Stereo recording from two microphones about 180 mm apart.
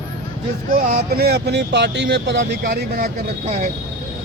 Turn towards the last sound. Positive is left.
turn(degrees=-40)  # may be behind; listen again after turning